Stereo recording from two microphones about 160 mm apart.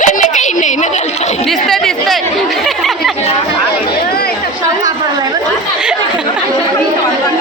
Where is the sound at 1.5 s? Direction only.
Centre (ahead or behind).